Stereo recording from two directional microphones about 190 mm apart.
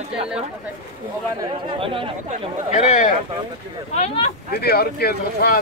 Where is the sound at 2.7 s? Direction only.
40° left (ahead or behind).